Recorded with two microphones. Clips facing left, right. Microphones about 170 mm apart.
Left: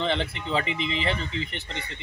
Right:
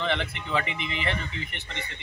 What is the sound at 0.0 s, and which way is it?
Speech, 30° left (ahead or behind).